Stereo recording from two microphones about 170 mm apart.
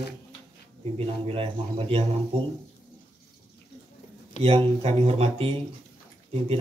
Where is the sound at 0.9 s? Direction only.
35° right (ahead or behind).